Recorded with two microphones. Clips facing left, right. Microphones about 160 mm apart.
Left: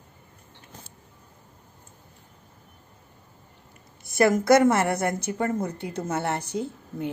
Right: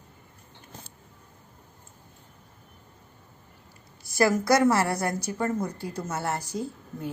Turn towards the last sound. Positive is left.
turn(degrees=20)  # may be behind; listen again after turning